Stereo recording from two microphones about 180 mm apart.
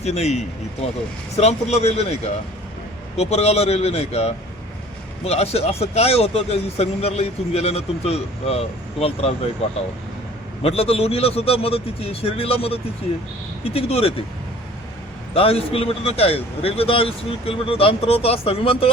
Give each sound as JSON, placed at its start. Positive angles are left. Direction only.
{"t": 0.0, "sound": "a man's voice", "side_deg": 35}
{"t": 3.2, "sound": "a man's voice", "side_deg": 35}
{"t": 10.6, "sound": "a man's voice", "side_deg": 35}
{"t": 15.3, "sound": "a man's voice", "side_deg": 30}